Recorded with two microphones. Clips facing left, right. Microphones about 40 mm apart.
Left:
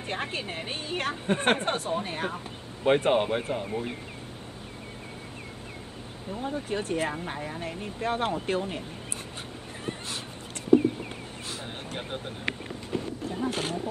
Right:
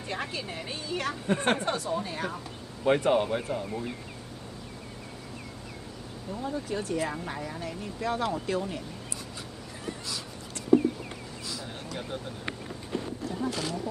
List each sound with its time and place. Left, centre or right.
0.0 s a woman's voice: left
6.3 s a woman's voice: left
11.4 s a sound: left
13.5 s a woman's voice: left